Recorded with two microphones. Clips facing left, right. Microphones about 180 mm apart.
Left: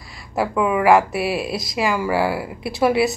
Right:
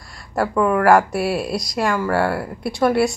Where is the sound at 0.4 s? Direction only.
5° left (ahead or behind).